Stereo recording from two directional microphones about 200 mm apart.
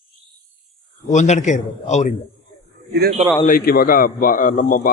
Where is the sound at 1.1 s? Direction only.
35° left (ahead or behind).